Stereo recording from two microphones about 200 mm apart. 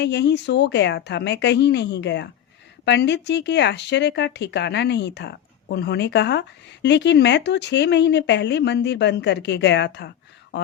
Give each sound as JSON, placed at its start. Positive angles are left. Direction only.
{"t": 0.0, "sound": "speech", "side_deg": 60}